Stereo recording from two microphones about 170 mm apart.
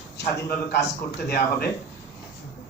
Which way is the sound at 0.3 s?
80° left.